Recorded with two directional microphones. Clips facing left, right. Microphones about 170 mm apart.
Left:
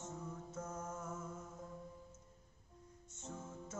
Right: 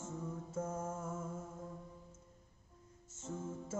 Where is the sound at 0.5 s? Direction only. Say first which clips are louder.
Right 6 dB; 25° right (ahead or behind).